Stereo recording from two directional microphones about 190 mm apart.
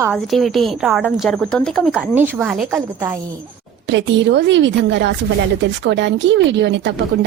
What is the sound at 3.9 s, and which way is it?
A woman's voice, 70° right (ahead or behind).